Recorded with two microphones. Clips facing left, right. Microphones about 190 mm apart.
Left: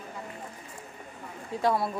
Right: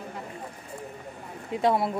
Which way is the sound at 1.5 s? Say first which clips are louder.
Right 3 dB; 25° right (ahead or behind).